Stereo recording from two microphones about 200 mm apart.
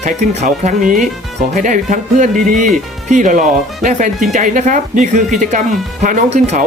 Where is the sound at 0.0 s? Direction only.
35° right (ahead or behind).